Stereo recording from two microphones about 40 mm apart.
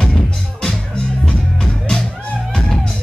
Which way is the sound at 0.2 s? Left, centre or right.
Left.